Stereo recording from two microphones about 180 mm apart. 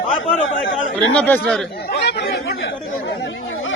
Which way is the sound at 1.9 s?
65° left (ahead or behind).